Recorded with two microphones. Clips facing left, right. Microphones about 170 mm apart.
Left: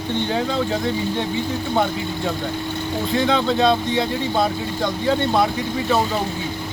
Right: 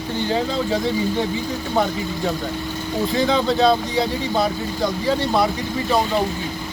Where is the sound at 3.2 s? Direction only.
Centre (ahead or behind).